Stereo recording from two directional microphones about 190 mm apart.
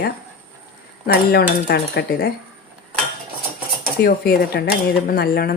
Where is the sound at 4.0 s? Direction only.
55° left (ahead or behind).